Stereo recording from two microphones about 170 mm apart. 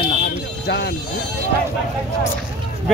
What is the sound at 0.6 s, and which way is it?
Speech, 90° left.